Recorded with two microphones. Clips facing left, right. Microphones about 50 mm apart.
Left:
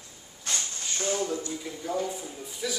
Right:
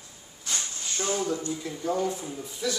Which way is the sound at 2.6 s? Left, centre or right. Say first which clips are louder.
Right 3 dB; centre.